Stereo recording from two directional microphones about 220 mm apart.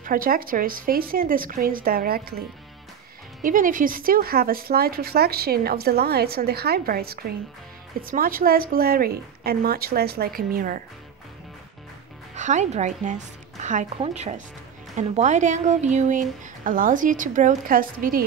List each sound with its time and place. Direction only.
0.0 s speech: 40° right (ahead or behind)
3.4 s a woman's voice: 40° right (ahead or behind)
12.4 s speech: 35° right (ahead or behind)